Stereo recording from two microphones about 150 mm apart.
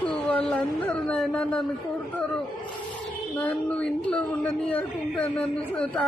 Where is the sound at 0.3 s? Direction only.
5° left (ahead or behind).